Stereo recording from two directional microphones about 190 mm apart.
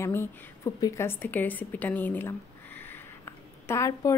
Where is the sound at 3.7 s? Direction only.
15° left (ahead or behind).